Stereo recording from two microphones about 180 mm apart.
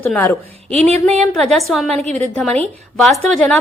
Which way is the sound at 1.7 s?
Centre (ahead or behind).